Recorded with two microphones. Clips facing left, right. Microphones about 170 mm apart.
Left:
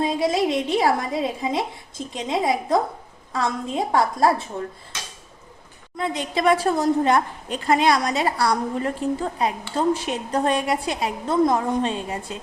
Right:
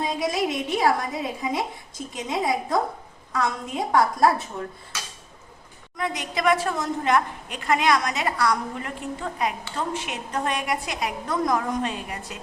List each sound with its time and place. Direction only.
0.0 s a woman's voice: 25° left (ahead or behind)
6.0 s a woman's voice: 30° left (ahead or behind)